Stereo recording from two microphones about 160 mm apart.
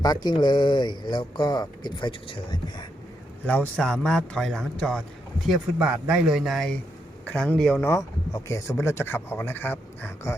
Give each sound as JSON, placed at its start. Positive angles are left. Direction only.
{"t": 0.0, "sound": "speech", "side_deg": 25}
{"t": 3.4, "sound": "speech", "side_deg": 10}
{"t": 5.8, "sound": "speech", "side_deg": -5}